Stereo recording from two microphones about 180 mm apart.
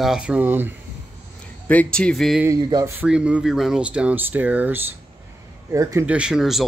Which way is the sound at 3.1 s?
5° right (ahead or behind).